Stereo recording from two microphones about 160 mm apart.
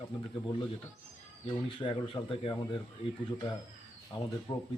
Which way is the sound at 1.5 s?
30° left (ahead or behind).